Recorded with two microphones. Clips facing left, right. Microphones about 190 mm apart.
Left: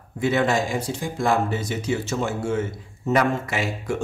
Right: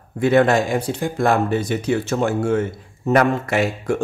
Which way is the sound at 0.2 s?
60° right (ahead or behind).